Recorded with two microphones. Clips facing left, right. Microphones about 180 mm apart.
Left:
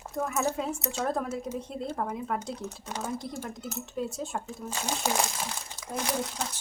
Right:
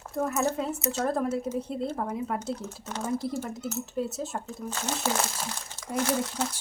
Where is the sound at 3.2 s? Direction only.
5° right (ahead or behind).